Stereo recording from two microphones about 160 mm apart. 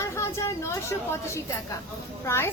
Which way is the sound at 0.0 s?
20° left (ahead or behind).